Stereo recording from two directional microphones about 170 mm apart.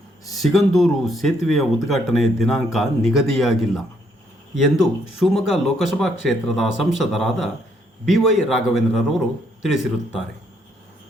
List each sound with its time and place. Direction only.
0.3 s speech: centre (ahead or behind)